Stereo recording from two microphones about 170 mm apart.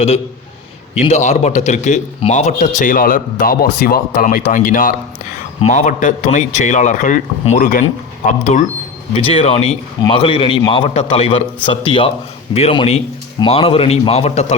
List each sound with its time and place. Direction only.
1.0 s speech: 40° left (ahead or behind)
9.1 s a man's voice: 35° left (ahead or behind)